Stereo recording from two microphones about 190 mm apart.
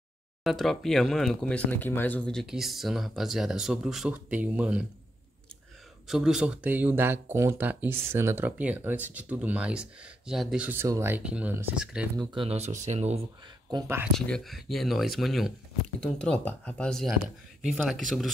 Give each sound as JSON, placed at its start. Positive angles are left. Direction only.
{"t": 0.4, "sound": "speech", "side_deg": 0}
{"t": 6.0, "sound": "speech", "side_deg": 0}
{"t": 12.4, "sound": "speech", "side_deg": -35}
{"t": 13.7, "sound": "speech", "side_deg": -15}
{"t": 14.1, "sound": "speech", "side_deg": 5}